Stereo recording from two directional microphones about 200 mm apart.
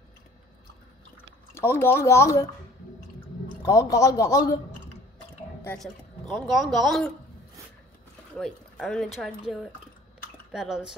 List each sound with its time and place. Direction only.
1.5 s speech: 10° left (ahead or behind)
3.6 s speech: 15° left (ahead or behind)
5.8 s speech: centre (ahead or behind)
8.4 s speech: centre (ahead or behind)
10.5 s speech: 5° right (ahead or behind)